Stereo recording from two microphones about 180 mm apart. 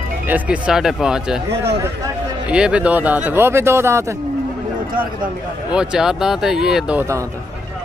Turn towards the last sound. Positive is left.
turn(degrees=-15)  # may be behind; listen again after turning